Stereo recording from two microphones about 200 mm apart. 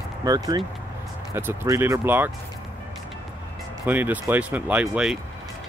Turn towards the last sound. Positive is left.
turn(degrees=-5)  # may be behind; listen again after turning